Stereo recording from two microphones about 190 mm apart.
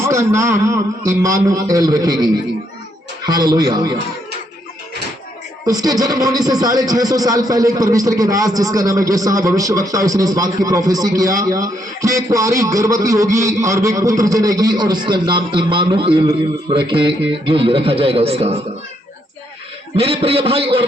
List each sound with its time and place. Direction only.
0.0 s a man's voice: 15° right (ahead or behind)
3.2 s a man's voice: 20° right (ahead or behind)
5.6 s a man's voice: 20° right (ahead or behind)
20.0 s a man's voice: 30° right (ahead or behind)